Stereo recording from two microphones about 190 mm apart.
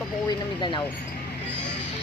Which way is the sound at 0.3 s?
25° left (ahead or behind).